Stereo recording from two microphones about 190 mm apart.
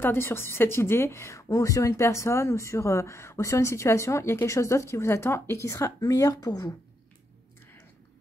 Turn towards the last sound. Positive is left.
turn(degrees=10)  # may be behind; listen again after turning